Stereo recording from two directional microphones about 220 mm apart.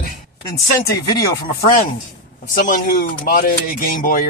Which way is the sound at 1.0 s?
15° left (ahead or behind).